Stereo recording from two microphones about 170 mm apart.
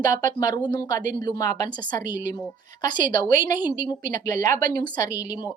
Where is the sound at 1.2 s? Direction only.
20° left (ahead or behind).